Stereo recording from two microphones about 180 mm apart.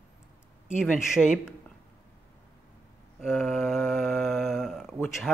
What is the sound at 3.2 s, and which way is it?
Speech, 5° right (ahead or behind).